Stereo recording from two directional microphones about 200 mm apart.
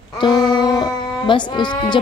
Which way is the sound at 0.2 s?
20° left (ahead or behind).